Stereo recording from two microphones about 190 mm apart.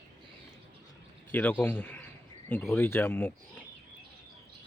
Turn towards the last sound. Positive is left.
turn(degrees=10)  # may be behind; listen again after turning